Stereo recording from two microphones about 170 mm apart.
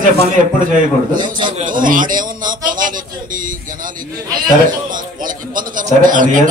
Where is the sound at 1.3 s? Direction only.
30° right (ahead or behind).